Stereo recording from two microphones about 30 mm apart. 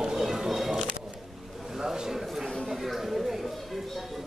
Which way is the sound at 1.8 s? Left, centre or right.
Centre.